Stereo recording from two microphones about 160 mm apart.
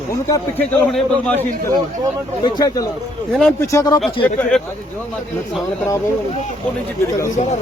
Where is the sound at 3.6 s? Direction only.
20° left (ahead or behind).